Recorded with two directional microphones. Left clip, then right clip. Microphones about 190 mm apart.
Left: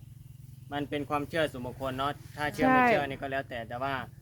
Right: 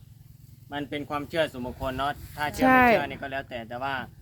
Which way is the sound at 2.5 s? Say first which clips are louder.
Right 5 dB; 20° right (ahead or behind).